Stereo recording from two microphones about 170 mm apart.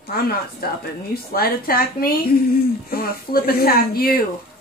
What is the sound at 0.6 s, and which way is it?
A woman's voice, 65° left (ahead or behind).